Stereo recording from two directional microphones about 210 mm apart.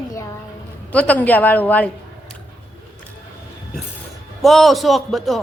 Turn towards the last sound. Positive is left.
turn(degrees=0)  # may be behind; listen again after turning